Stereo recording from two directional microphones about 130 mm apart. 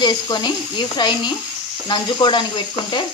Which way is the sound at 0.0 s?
35° left (ahead or behind).